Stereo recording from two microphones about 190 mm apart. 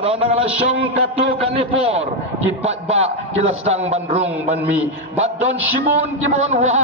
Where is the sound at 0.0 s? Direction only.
30° right (ahead or behind).